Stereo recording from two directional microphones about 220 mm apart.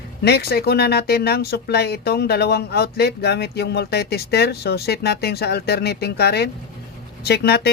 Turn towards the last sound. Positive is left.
turn(degrees=45)  # may be behind; listen again after turning